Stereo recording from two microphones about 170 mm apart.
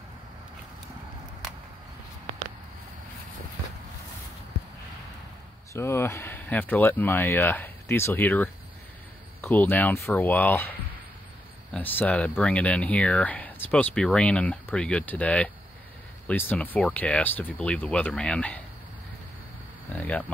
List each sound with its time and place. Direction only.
5.7 s speech: 15° left (ahead or behind)
11.7 s speech: 10° left (ahead or behind)
19.9 s hum: 10° left (ahead or behind)